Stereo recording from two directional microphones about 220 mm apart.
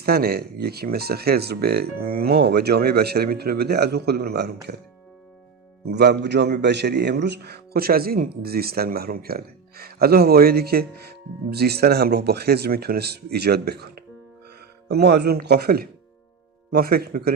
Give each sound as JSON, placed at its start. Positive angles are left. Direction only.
{"t": 0.0, "sound": "speech", "side_deg": -45}
{"t": 5.8, "sound": "speech", "side_deg": -50}